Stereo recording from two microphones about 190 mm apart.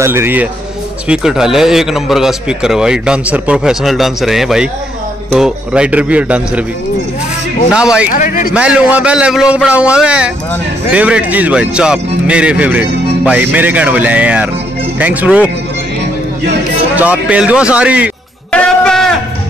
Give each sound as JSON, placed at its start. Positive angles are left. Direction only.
{"t": 0.0, "sound": "a man's voice", "side_deg": -15}
{"t": 7.7, "sound": "a man's voice", "side_deg": -5}
{"t": 8.1, "sound": "speech", "side_deg": 45}
{"t": 8.5, "sound": "a man's voice", "side_deg": -5}
{"t": 16.9, "sound": "speech", "side_deg": -5}
{"t": 18.5, "sound": "music", "side_deg": 5}